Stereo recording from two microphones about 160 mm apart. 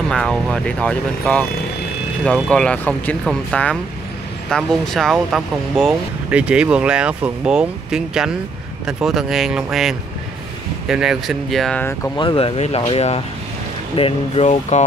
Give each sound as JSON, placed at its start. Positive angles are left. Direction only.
{"t": 0.1, "sound": "speech", "side_deg": 5}
{"t": 12.2, "sound": "speech", "side_deg": 30}